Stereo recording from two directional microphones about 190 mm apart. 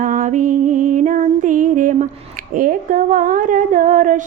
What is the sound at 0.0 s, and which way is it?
Music, 45° right (ahead or behind).